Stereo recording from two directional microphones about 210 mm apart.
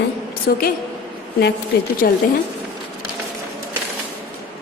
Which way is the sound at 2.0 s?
50° left (ahead or behind).